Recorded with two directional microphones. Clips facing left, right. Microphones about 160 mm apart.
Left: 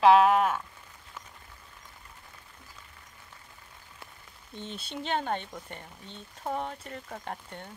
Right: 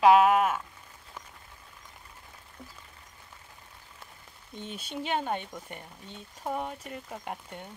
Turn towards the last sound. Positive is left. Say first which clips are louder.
# even
turn(degrees=-10)  # may be behind; listen again after turning